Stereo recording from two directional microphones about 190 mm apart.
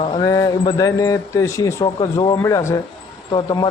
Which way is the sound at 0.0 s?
20° left (ahead or behind).